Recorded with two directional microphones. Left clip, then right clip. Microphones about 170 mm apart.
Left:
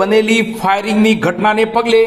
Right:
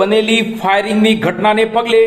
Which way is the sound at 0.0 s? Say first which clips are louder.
Even; 25° left (ahead or behind).